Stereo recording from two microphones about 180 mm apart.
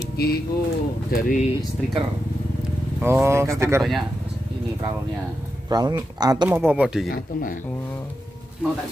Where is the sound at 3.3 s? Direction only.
15° right (ahead or behind).